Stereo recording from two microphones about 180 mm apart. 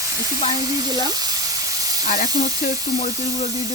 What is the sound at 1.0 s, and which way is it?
Sizzle, 20° right (ahead or behind).